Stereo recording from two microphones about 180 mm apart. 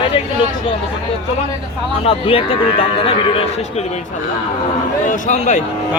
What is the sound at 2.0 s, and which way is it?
A man's voice, 30° left (ahead or behind).